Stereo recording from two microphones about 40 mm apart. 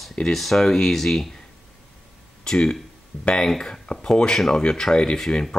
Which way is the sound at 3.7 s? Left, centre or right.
Left.